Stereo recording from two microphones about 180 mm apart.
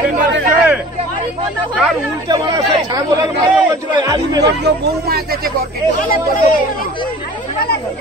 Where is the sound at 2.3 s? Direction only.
20° right (ahead or behind).